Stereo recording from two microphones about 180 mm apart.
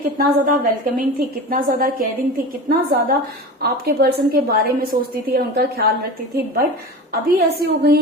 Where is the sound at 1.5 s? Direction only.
50° right (ahead or behind).